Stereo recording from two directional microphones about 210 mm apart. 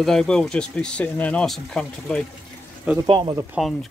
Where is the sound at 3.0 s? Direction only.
20° right (ahead or behind).